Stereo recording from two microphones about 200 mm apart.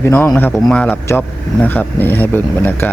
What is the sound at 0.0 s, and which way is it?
Speech, 10° left (ahead or behind).